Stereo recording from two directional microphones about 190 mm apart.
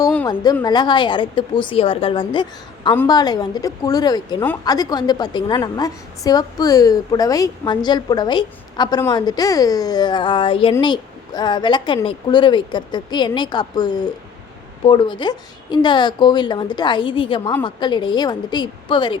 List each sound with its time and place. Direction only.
0.6 s a woman's voice: 20° left (ahead or behind)